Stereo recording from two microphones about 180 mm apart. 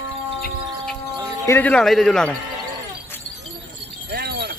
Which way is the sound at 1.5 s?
10° left (ahead or behind).